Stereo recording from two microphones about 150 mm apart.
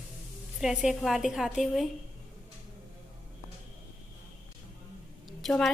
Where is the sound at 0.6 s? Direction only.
5° right (ahead or behind).